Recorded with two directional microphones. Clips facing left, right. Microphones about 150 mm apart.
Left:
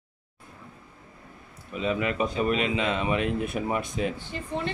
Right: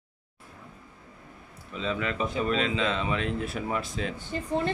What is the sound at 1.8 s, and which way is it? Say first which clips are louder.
Speech: left 3 dB; 15° left (ahead or behind).